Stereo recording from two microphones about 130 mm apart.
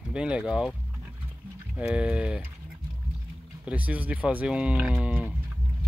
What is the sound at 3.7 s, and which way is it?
Speech, 10° right (ahead or behind).